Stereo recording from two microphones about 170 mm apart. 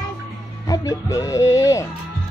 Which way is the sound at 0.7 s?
20° left (ahead or behind).